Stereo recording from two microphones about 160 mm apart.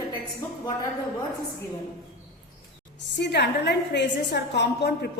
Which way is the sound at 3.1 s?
90° left.